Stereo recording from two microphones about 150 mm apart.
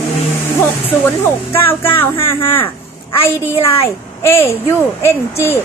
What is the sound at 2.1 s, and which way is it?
Speech, 35° left (ahead or behind).